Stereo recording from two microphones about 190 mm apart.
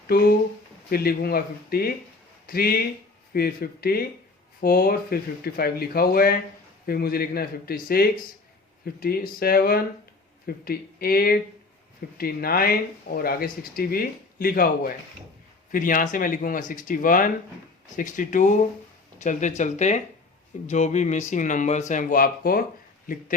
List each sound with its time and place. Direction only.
0.9 s speech: 55° left (ahead or behind)